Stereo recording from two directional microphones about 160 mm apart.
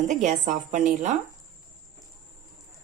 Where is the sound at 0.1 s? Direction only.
50° right (ahead or behind).